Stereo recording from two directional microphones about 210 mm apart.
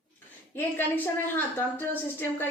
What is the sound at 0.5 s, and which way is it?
A woman's voice, 10° left (ahead or behind).